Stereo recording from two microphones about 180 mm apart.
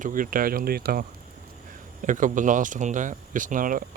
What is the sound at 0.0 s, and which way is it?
Speech, 50° right (ahead or behind).